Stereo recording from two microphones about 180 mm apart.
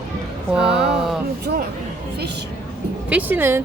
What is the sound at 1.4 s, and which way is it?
Speech, 55° right (ahead or behind).